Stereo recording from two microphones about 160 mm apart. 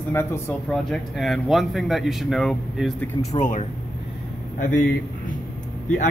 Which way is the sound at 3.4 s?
50° left (ahead or behind).